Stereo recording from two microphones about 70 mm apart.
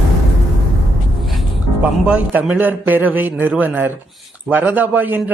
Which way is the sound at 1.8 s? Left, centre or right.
Centre.